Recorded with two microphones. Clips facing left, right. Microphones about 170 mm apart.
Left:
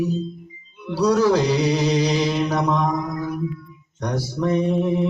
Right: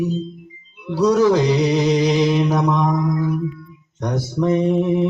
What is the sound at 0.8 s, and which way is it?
Music, 20° right (ahead or behind).